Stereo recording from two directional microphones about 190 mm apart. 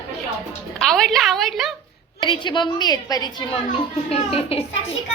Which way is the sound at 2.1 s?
25° left (ahead or behind).